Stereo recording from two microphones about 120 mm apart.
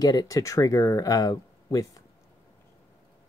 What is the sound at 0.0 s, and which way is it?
Speech, 30° left (ahead or behind).